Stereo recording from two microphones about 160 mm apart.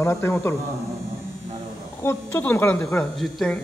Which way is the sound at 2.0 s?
15° left (ahead or behind).